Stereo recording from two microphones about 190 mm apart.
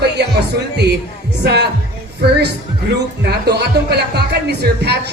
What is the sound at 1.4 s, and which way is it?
Speech, 60° right (ahead or behind).